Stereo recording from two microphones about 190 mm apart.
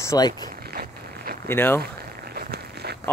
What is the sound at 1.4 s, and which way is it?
Speech, 10° left (ahead or behind).